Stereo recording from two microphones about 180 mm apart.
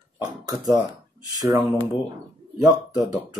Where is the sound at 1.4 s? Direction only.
20° right (ahead or behind).